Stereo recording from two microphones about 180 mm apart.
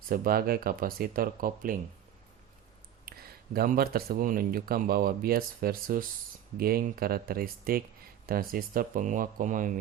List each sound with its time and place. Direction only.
0.1 s speech: 55° right (ahead or behind)
3.1 s speech: 55° right (ahead or behind)